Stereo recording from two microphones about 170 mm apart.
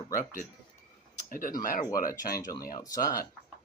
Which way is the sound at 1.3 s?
55° left (ahead or behind).